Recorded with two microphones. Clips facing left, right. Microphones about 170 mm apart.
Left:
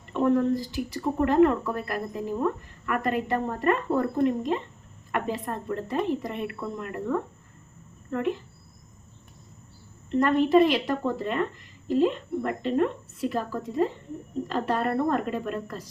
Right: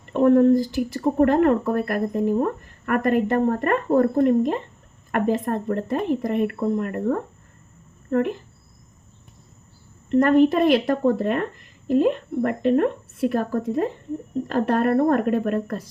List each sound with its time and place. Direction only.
0.1 s speech: 50° right (ahead or behind)
10.2 s a woman's voice: 50° right (ahead or behind)